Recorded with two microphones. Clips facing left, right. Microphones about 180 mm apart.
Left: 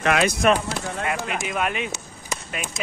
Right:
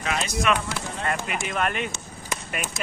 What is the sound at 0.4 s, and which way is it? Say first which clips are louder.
Speech: left 4 dB; 35° left (ahead or behind).